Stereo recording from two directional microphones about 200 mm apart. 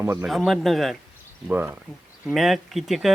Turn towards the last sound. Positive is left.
turn(degrees=0)  # may be behind; listen again after turning